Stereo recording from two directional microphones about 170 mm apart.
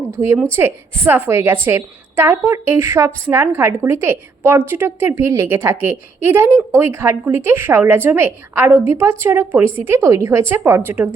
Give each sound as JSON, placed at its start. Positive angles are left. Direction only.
{"t": 0.2, "sound": "a woman's voice", "side_deg": -15}